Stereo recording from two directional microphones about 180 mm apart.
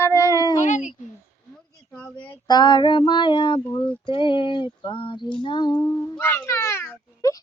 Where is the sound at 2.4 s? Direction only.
25° left (ahead or behind).